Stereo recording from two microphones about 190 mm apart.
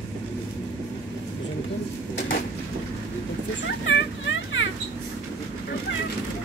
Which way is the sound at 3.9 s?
85° left.